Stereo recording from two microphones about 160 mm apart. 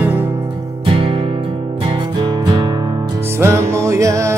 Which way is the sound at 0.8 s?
35° right (ahead or behind).